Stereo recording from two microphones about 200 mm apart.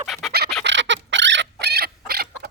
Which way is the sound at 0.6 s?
65° right (ahead or behind).